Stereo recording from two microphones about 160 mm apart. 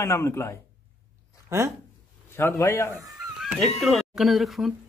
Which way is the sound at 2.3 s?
15° left (ahead or behind).